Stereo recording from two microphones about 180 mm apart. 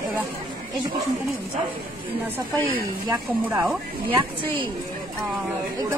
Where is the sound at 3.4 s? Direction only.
10° right (ahead or behind).